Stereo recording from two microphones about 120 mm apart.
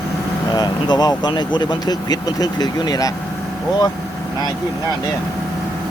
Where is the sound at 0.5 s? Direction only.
35° left (ahead or behind).